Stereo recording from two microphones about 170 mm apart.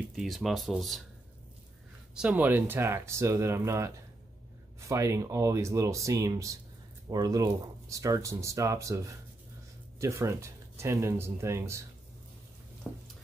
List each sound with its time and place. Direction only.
0.1 s speech: centre (ahead or behind)
2.1 s speech: 10° right (ahead or behind)
12.9 s speech: centre (ahead or behind)